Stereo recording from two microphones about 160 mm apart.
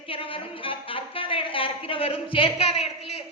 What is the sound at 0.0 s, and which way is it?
A woman's voice, 35° left (ahead or behind).